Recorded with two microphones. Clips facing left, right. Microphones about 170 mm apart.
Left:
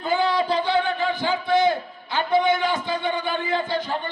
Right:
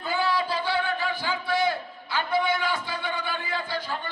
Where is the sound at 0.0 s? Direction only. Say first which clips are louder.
Left 5 dB; 20° left (ahead or behind).